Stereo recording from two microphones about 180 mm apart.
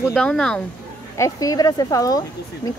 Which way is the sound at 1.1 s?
20° left (ahead or behind).